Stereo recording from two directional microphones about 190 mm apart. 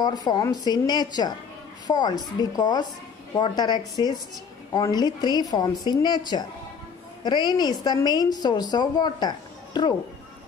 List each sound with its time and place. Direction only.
0.0 s a woman's voice: 20° left (ahead or behind)